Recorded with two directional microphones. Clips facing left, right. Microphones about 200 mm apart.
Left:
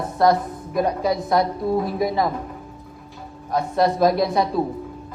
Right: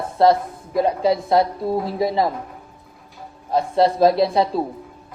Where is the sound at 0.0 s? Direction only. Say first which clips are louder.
Right 2 dB; 30° right (ahead or behind).